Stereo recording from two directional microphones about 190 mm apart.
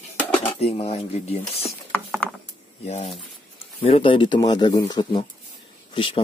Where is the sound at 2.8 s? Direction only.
35° left (ahead or behind).